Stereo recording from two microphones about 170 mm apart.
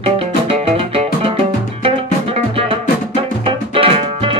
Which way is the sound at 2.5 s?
35° right (ahead or behind).